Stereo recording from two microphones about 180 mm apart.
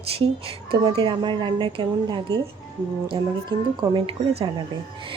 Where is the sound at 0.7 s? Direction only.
30° right (ahead or behind).